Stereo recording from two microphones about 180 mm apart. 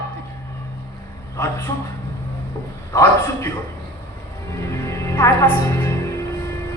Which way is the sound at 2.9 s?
15° left (ahead or behind).